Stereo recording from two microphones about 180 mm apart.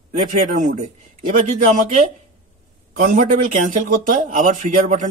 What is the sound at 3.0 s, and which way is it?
Speech, 45° right (ahead or behind).